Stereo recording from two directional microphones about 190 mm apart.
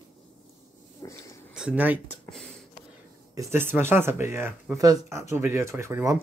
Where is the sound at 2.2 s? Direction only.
5° left (ahead or behind).